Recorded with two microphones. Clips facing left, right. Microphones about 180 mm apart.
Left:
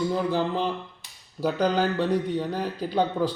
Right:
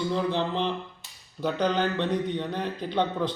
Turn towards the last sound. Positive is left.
turn(degrees=5)  # may be behind; listen again after turning